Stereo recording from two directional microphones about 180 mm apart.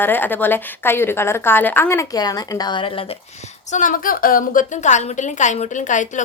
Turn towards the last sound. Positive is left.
turn(degrees=45)  # may be behind; listen again after turning